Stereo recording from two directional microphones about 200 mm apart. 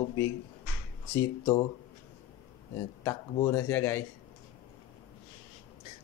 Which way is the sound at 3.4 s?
15° left (ahead or behind).